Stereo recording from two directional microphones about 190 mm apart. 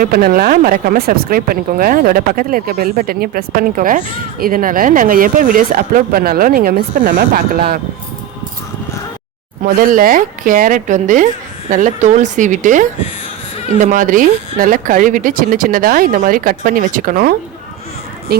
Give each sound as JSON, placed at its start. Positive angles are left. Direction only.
{"t": 0.0, "sound": "speech", "side_deg": -50}
{"t": 9.6, "sound": "speech", "side_deg": -45}